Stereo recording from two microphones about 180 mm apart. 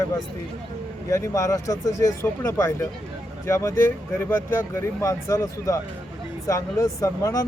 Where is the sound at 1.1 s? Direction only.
15° left (ahead or behind).